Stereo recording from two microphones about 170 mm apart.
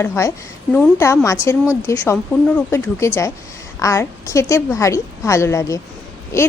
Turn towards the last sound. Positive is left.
turn(degrees=15)  # may be behind; listen again after turning